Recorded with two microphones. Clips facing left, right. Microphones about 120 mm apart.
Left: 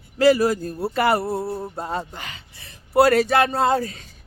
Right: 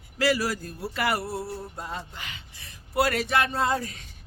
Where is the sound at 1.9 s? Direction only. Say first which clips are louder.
Left 8 dB; 45° left (ahead or behind).